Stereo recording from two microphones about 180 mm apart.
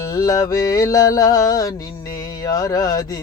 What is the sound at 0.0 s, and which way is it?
Music, 20° left (ahead or behind).